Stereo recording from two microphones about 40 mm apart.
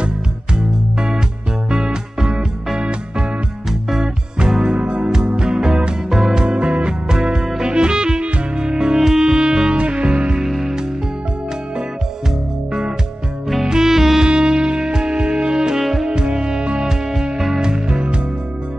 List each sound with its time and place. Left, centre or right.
0.6 s music: centre
3.9 s music: centre
10.4 s music: centre
13.7 s music: centre
14.2 s music: right
15.8 s music: centre
16.1 s music: right
16.8 s music: centre; by 18.2 s right